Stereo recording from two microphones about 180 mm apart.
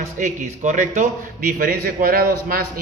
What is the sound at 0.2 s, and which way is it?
A man's voice, 45° right (ahead or behind).